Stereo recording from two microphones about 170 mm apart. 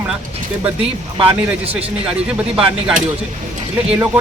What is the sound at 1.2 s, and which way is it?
Speech, 35° right (ahead or behind).